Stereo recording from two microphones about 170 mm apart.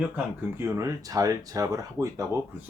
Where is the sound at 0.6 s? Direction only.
15° right (ahead or behind).